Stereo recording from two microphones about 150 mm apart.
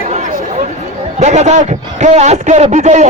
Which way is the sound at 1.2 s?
50° right (ahead or behind).